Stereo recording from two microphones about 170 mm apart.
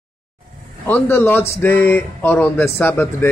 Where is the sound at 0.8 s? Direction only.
10° left (ahead or behind).